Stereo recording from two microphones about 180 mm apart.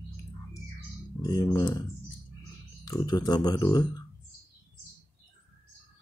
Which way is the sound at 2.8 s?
20° left (ahead or behind).